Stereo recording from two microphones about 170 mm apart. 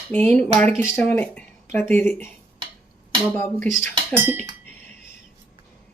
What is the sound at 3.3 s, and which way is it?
Speech, 15° left (ahead or behind).